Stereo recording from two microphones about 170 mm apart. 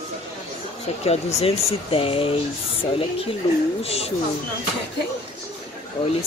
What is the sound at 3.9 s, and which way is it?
Speech, 35° left (ahead or behind).